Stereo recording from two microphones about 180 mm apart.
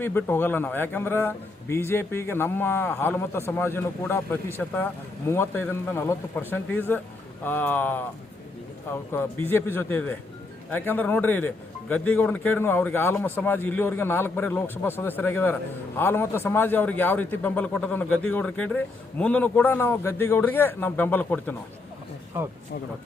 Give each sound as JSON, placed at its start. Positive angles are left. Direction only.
{"t": 0.0, "sound": "speech", "side_deg": 10}